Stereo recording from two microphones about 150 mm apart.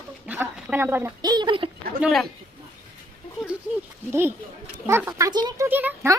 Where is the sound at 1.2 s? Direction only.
30° right (ahead or behind).